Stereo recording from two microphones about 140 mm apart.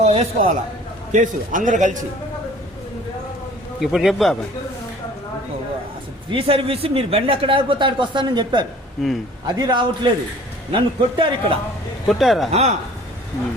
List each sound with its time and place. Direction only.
0.0 s a man's voice: 45° right (ahead or behind)
1.1 s a man's voice: 65° right (ahead or behind)
3.8 s a man's voice: centre (ahead or behind)
6.3 s speech: 40° right (ahead or behind)
9.0 s a man's voice: centre (ahead or behind)
9.6 s speech: 35° right (ahead or behind)
12.0 s a man's voice: centre (ahead or behind)
12.5 s speech: 50° right (ahead or behind)